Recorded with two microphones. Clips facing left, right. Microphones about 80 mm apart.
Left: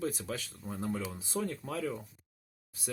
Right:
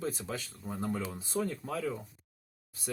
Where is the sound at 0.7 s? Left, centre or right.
Centre.